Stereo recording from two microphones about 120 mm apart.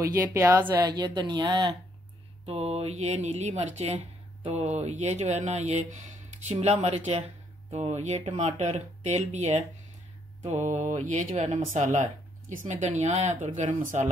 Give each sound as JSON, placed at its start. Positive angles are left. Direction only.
{"t": 0.0, "sound": "speech", "side_deg": -25}
{"t": 0.8, "sound": "speech", "side_deg": -35}
{"t": 2.4, "sound": "speech", "side_deg": -55}